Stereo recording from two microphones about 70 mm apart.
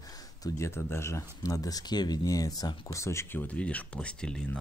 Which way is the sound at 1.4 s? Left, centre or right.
Left.